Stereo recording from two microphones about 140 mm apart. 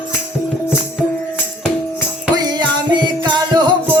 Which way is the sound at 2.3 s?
30° right (ahead or behind).